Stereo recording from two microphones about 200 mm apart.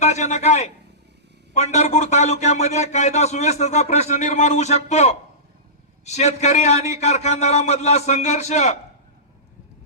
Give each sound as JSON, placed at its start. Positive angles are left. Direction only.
{"t": 0.0, "sound": "a man's voice", "side_deg": 35}